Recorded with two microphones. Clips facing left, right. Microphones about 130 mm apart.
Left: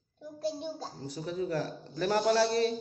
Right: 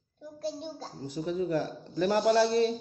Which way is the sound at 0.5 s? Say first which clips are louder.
Left 1 dB; 10° left (ahead or behind).